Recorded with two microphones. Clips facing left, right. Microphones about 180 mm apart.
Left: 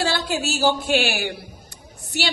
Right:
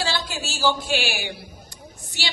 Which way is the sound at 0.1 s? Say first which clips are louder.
Left 6 dB; 60° left (ahead or behind).